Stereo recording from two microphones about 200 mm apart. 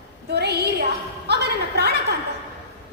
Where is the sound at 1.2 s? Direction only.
55° right (ahead or behind).